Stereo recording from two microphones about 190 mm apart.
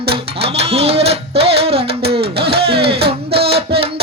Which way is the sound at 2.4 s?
60° right (ahead or behind).